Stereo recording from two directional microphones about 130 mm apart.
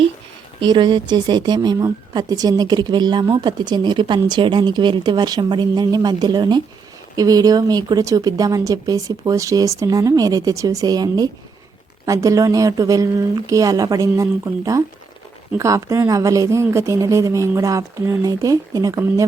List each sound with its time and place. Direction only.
0.6 s a woman's voice: 35° right (ahead or behind)